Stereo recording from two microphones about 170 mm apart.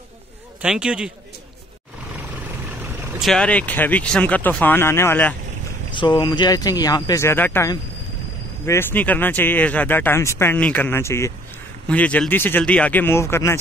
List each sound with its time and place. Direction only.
0.6 s a man's voice: 5° right (ahead or behind)
3.2 s speech: 5° left (ahead or behind)
5.9 s speech: 25° left (ahead or behind)